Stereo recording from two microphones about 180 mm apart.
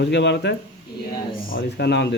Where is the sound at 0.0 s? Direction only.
75° left (ahead or behind).